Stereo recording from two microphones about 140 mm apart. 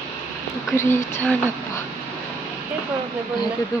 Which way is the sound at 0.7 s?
20° left (ahead or behind).